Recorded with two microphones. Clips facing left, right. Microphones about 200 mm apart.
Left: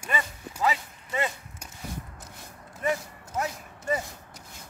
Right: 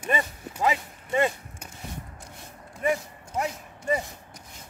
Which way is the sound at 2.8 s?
10° right (ahead or behind).